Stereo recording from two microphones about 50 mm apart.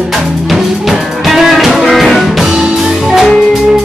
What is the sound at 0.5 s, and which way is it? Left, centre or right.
Music, centre.